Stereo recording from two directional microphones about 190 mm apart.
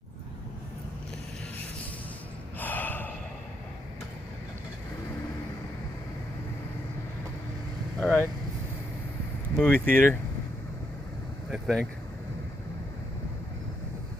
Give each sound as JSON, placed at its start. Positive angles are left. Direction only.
{"t": 2.6, "sound": "gasp", "side_deg": 10}
{"t": 8.0, "sound": "vehicle", "side_deg": 5}
{"t": 9.6, "sound": "speech", "side_deg": 10}
{"t": 11.5, "sound": "speech", "side_deg": 0}